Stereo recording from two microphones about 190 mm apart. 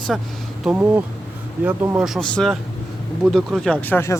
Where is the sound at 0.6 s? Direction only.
10° right (ahead or behind).